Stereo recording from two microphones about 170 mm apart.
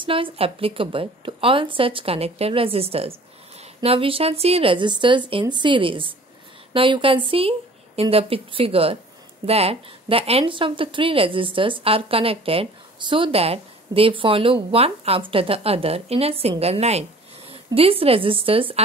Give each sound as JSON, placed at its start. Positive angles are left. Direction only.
{"t": 0.0, "sound": "a woman's voice", "side_deg": -30}